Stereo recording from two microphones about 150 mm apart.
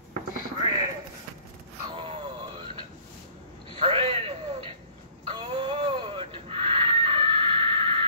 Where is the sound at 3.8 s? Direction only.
35° right (ahead or behind).